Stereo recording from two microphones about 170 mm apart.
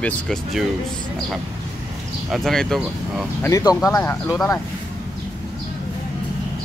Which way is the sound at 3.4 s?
20° left (ahead or behind).